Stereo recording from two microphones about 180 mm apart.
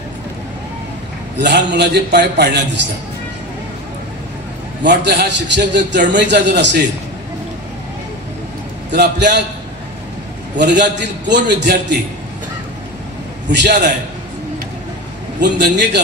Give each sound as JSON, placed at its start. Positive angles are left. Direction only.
{"t": 1.4, "sound": "a man's voice", "side_deg": -70}
{"t": 4.8, "sound": "a man's voice", "side_deg": -75}
{"t": 8.9, "sound": "a man's voice", "side_deg": -70}
{"t": 10.6, "sound": "a man's voice", "side_deg": -75}
{"t": 13.5, "sound": "a man's voice", "side_deg": -70}
{"t": 15.4, "sound": "a man's voice", "side_deg": -70}